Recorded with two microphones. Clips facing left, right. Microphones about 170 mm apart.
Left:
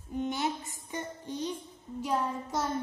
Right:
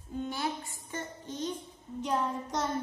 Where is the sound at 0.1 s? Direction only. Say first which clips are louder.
Left 2 dB; 20° left (ahead or behind).